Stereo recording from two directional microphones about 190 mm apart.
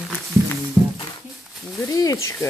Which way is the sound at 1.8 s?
20° left (ahead or behind).